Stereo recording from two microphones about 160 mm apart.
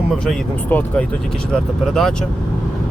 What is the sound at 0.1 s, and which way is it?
Speech, centre (ahead or behind).